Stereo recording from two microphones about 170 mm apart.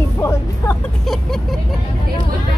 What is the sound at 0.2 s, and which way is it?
Music, 15° left (ahead or behind).